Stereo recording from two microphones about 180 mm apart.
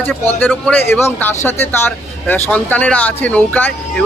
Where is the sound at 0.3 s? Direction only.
10° left (ahead or behind).